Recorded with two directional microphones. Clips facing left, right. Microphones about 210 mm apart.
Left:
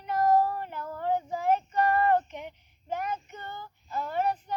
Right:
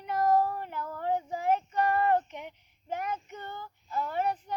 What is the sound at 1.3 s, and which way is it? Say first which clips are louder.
Female singing: left 2 dB; 40° left (ahead or behind).